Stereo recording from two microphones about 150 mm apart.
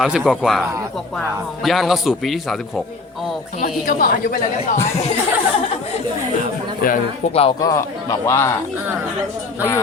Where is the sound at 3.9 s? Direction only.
70° left (ahead or behind).